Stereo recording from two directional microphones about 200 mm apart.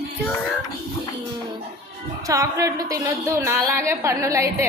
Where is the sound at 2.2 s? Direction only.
15° right (ahead or behind).